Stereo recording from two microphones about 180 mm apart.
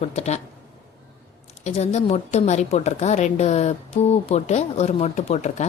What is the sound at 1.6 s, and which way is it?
A woman's voice, 35° left (ahead or behind).